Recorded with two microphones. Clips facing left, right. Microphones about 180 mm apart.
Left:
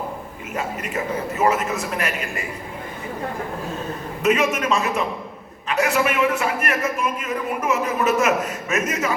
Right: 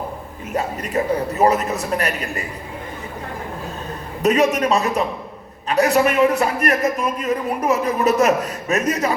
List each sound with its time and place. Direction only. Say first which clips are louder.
0.5 s a man's voice: right 5 dB; 35° right (ahead or behind)
4.2 s a man's voice: right 3 dB; 35° right (ahead or behind)